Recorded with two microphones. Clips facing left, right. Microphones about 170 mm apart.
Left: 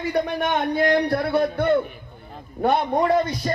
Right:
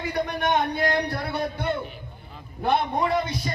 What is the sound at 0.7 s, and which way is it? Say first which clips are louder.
A man's voice: left 6 dB; 50° left (ahead or behind).